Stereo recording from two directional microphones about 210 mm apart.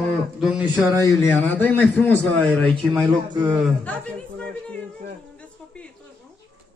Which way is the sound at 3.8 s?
5° left (ahead or behind).